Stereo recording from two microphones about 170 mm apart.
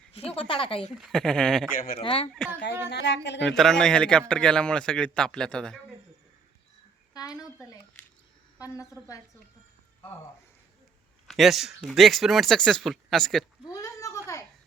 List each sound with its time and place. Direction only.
0.1 s speech: 35° left (ahead or behind)
0.9 s a man's voice: centre (ahead or behind)
2.0 s speech: 35° left (ahead or behind)
2.8 s speech: 90° left
3.5 s a man's voice: 5° left (ahead or behind)
7.1 s a woman's voice: 20° left (ahead or behind)
11.3 s a man's voice: centre (ahead or behind)
13.7 s a sound: 20° left (ahead or behind)